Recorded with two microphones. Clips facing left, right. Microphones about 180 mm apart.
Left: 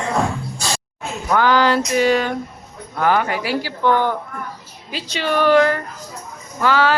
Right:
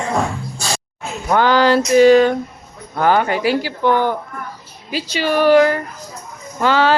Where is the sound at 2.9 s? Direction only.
30° right (ahead or behind); by 5.8 s 10° right (ahead or behind).